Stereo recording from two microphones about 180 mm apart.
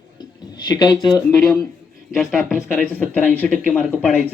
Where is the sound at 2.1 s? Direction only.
Centre (ahead or behind).